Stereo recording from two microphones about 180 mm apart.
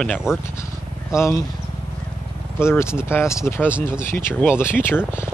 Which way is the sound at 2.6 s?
15° left (ahead or behind).